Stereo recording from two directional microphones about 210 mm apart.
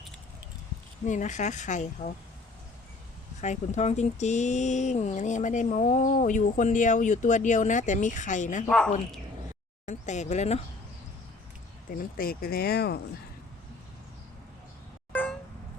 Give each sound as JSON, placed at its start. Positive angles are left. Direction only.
{"t": 1.0, "sound": "speech", "side_deg": 35}
{"t": 3.4, "sound": "speech", "side_deg": 35}
{"t": 8.6, "sound": "a woman's voice", "side_deg": 5}
{"t": 9.8, "sound": "speech", "side_deg": 35}
{"t": 12.1, "sound": "speech", "side_deg": 45}
{"t": 15.1, "sound": "a sound", "side_deg": 10}